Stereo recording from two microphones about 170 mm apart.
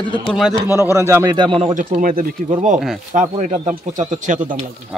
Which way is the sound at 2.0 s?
55° right (ahead or behind).